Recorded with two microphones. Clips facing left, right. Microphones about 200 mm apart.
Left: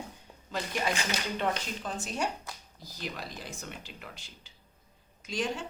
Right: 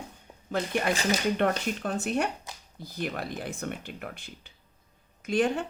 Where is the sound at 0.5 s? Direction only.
55° right (ahead or behind).